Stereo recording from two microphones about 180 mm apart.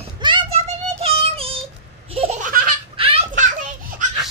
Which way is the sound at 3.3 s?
45° right (ahead or behind).